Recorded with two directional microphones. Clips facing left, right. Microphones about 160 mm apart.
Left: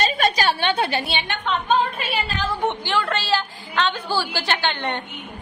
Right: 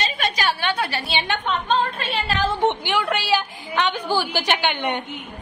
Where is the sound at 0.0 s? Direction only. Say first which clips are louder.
Left 4 dB; 45° left (ahead or behind).